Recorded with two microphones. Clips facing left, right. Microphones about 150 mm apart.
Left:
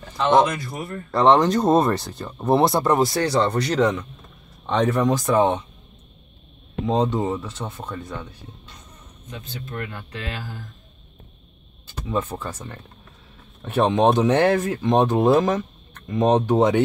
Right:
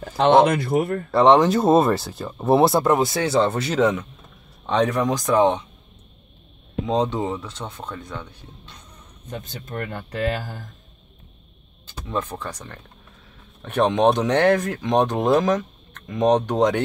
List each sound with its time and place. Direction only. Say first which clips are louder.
0.2 s speech: right 3 dB; 60° right (ahead or behind)
1.1 s speech: right 1 dB; 5° right (ahead or behind)
6.9 s speech: left 1 dB; 5° left (ahead or behind)
9.3 s speech: right 2 dB; 45° right (ahead or behind)
11.9 s speech: left 2 dB; 5° left (ahead or behind)